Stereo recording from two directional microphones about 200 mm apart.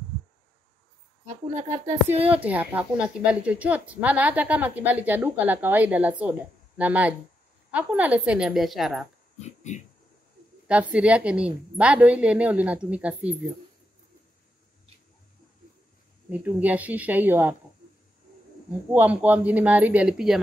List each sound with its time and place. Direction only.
1.2 s a woman's voice: 35° right (ahead or behind)
2.2 s a woman's voice: 10° right (ahead or behind)
9.4 s a sound: 35° left (ahead or behind)
10.7 s speech: 5° right (ahead or behind)
16.3 s speech: 5° right (ahead or behind)
18.9 s speech: 10° right (ahead or behind)